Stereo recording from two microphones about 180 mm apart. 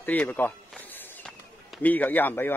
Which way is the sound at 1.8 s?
10° left (ahead or behind).